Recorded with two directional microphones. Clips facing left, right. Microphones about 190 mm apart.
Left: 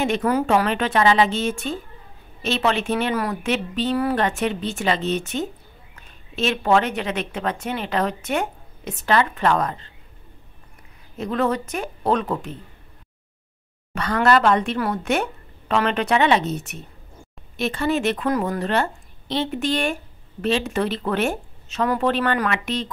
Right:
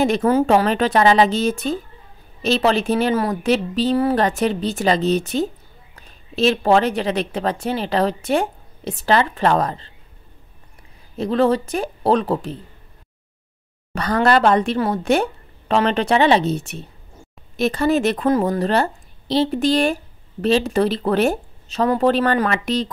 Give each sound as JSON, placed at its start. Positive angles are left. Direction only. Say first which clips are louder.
{"t": 0.0, "sound": "a woman's voice", "louder": "right 4 dB", "side_deg": -35}
{"t": 11.1, "sound": "a woman's voice", "louder": "right 5 dB", "side_deg": -30}
{"t": 13.9, "sound": "a woman's voice", "louder": "right 2 dB", "side_deg": -35}